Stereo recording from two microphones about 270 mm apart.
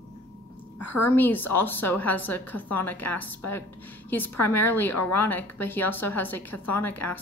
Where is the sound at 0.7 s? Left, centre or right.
Left.